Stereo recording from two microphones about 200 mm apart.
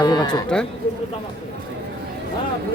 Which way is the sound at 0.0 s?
20° left (ahead or behind).